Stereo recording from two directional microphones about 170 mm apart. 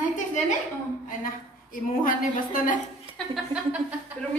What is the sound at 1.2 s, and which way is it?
A woman's voice, 55° left (ahead or behind).